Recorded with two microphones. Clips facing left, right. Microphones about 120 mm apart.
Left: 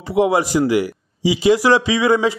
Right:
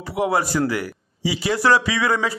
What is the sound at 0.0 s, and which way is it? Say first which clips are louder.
A man's voice: left 5 dB; 20° left (ahead or behind).